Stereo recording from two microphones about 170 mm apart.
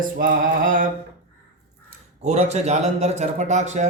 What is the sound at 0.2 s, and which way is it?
Mantra, 55° right (ahead or behind).